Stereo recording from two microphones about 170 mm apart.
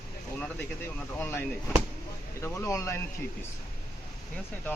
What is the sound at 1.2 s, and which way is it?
Speech, 10° left (ahead or behind).